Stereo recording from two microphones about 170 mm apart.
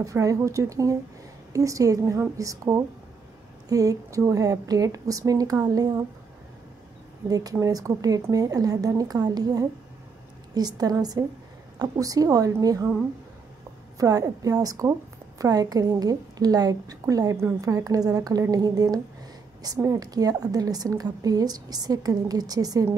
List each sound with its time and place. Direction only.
0.0 s a woman's voice: 20° right (ahead or behind)
7.2 s a woman's voice: 20° right (ahead or behind)
13.9 s a woman's voice: 20° right (ahead or behind)